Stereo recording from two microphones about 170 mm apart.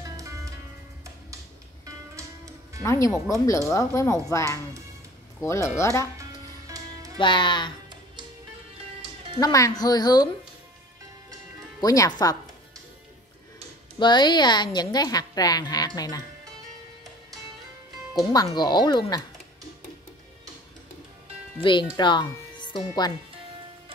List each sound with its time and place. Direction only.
0.0 s music: 20° right (ahead or behind)
2.1 s music: 20° right (ahead or behind)
2.8 s speech: 15° left (ahead or behind)
6.7 s music: 20° right (ahead or behind)
7.2 s a woman's voice: 30° left (ahead or behind)
9.4 s a woman's voice: 20° left (ahead or behind)
11.8 s a woman's voice: 20° left (ahead or behind)
13.9 s a woman's voice: 25° left (ahead or behind)
18.1 s a woman's voice: 20° left (ahead or behind)
21.9 s speech: 25° left (ahead or behind)